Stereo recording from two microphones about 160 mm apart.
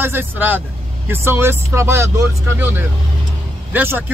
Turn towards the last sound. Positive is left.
turn(degrees=-10)  # may be behind; listen again after turning